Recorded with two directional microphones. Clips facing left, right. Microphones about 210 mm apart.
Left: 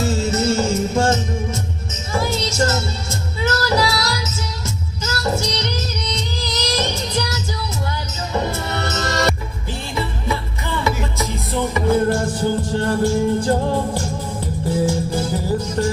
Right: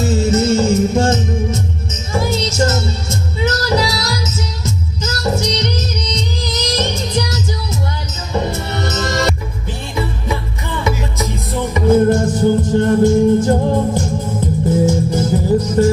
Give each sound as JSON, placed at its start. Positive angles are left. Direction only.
{"t": 0.0, "sound": "music", "side_deg": -20}
{"t": 11.7, "sound": "music", "side_deg": -20}